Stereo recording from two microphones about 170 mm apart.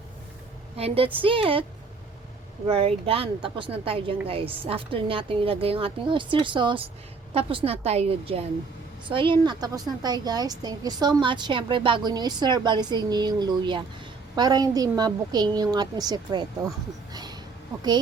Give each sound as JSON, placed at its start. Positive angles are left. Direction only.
{"t": 0.8, "sound": "a woman's voice", "side_deg": -35}
{"t": 2.6, "sound": "a woman's voice", "side_deg": -35}